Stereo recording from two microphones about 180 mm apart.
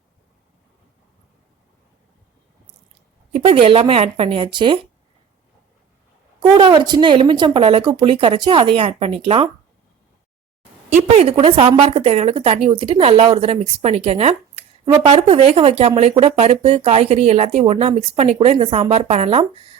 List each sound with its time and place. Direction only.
3.3 s speech: 35° right (ahead or behind)
6.6 s speech: 25° right (ahead or behind)
10.8 s speech: 35° right (ahead or behind)